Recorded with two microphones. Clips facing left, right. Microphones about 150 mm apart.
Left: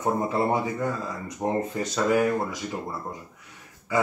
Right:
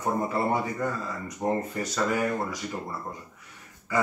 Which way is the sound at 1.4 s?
15° left (ahead or behind).